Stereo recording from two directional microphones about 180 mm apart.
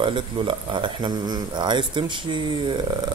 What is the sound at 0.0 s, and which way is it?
Speech, 25° right (ahead or behind).